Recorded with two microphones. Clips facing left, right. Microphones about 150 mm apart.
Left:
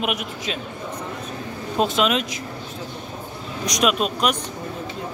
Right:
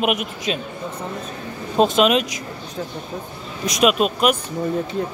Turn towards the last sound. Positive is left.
turn(degrees=-5)  # may be behind; listen again after turning